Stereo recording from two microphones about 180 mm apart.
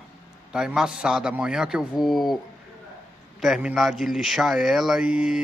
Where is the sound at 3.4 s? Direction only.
Centre (ahead or behind).